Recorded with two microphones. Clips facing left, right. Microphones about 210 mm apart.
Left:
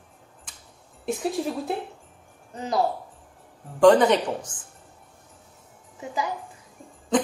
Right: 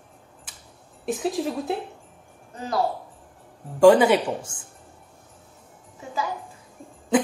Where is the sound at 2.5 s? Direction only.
20° left (ahead or behind).